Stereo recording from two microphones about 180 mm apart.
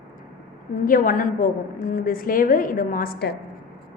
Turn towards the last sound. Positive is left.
turn(degrees=55)  # may be behind; listen again after turning